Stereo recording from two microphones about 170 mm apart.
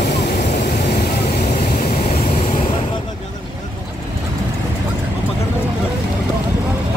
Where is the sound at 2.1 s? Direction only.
35° left (ahead or behind).